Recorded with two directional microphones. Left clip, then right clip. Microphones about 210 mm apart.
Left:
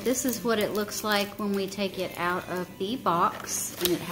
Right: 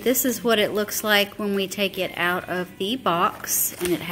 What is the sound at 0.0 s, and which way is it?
A woman's voice, 20° right (ahead or behind).